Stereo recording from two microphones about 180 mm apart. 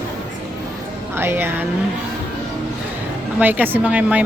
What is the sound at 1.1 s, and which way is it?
Speech, 15° right (ahead or behind).